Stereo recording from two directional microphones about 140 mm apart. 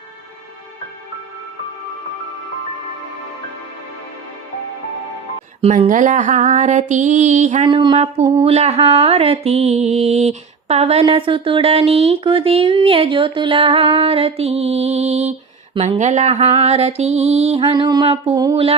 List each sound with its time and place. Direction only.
5.9 s a sound: 65° right (ahead or behind)
7.7 s speech: 35° right (ahead or behind)
7.9 s speech: 45° right (ahead or behind)
17.6 s music: 25° right (ahead or behind)
18.0 s speech: 45° right (ahead or behind)